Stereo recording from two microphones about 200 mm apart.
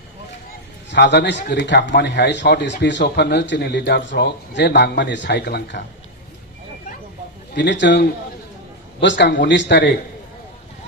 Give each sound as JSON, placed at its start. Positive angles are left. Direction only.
{"t": 0.9, "sound": "speech", "side_deg": 60}
{"t": 7.5, "sound": "speech", "side_deg": 60}